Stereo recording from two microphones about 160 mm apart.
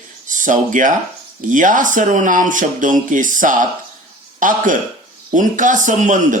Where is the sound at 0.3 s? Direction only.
55° right (ahead or behind).